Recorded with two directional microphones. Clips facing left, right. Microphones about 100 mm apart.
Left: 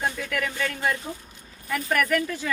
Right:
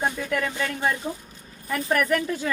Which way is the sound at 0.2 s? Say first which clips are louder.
Right 2 dB; 25° right (ahead or behind).